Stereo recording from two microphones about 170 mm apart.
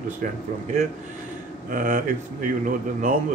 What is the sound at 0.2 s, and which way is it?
Speech, 50° right (ahead or behind).